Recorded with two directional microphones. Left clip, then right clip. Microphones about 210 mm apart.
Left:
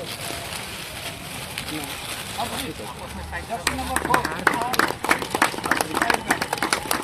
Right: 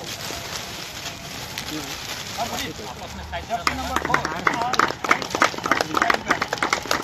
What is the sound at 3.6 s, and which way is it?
Speech, 40° left (ahead or behind).